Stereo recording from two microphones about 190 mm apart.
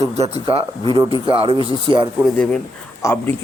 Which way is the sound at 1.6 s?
25° left (ahead or behind).